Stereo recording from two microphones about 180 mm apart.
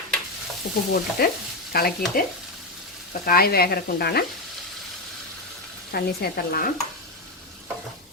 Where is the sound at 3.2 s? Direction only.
55° left (ahead or behind).